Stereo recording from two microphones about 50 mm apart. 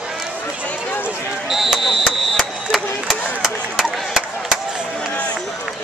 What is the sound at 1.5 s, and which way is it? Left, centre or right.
Mechanisms, centre.